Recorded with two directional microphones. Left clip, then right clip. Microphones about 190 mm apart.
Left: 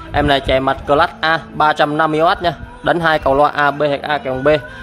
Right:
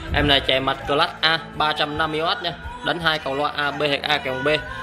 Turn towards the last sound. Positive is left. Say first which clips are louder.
# left 6 dB
turn(degrees=35)  # may be behind; listen again after turning